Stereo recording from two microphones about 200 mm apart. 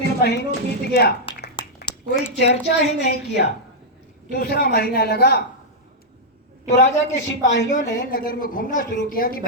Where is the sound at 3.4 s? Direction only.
55° left (ahead or behind).